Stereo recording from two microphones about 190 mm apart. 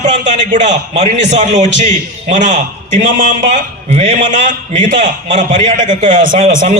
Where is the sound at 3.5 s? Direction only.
40° right (ahead or behind).